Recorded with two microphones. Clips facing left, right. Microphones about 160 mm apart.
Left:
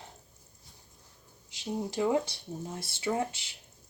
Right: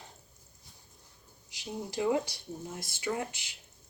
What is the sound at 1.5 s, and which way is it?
Speech, 25° left (ahead or behind).